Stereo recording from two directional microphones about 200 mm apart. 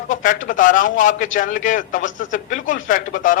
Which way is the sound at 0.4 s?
40° left (ahead or behind).